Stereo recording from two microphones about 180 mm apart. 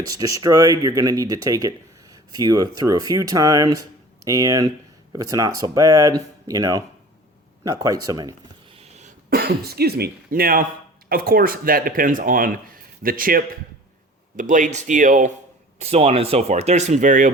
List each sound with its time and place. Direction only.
0.1 s speech: 20° right (ahead or behind)
8.8 s cough: 40° right (ahead or behind)
9.3 s speech: 60° right (ahead or behind)
15.8 s speech: 35° right (ahead or behind)